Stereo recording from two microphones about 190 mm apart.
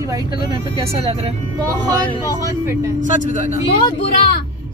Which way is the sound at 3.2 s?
45° left (ahead or behind).